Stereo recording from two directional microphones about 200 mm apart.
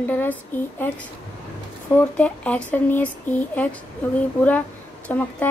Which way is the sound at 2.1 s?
5° left (ahead or behind).